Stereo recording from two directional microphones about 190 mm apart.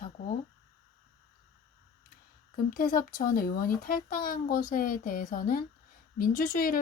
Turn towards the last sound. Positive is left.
turn(degrees=45)  # may be behind; listen again after turning